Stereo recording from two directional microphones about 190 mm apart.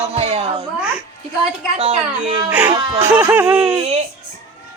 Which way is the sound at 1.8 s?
30° right (ahead or behind).